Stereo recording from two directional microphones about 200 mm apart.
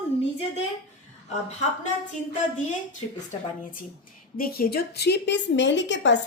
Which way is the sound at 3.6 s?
45° left (ahead or behind).